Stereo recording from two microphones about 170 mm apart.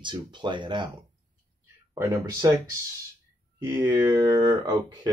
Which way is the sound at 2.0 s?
15° right (ahead or behind).